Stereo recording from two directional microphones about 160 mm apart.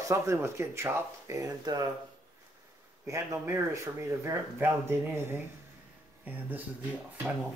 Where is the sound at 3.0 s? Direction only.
15° right (ahead or behind).